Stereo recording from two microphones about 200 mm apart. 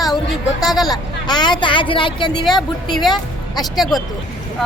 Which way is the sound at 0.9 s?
20° left (ahead or behind).